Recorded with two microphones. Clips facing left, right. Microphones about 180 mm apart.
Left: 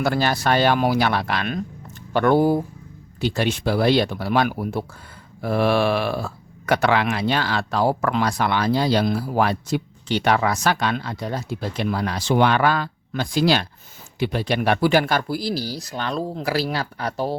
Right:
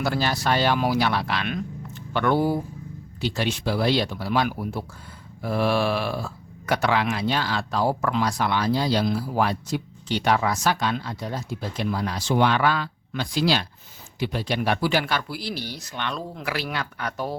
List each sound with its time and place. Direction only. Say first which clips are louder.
0.0 s speech: left 4 dB; 55° left (ahead or behind); by 17.3 s 30° left (ahead or behind)